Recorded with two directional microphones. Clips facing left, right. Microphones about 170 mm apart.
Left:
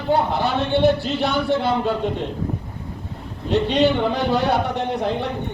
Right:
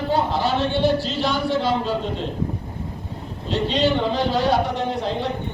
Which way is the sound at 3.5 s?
60° left (ahead or behind).